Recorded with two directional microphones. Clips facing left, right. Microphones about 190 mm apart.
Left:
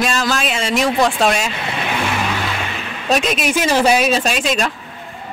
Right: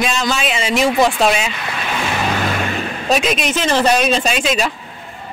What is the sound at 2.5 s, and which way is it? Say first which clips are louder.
Vehicle: right 5 dB; 45° right (ahead or behind).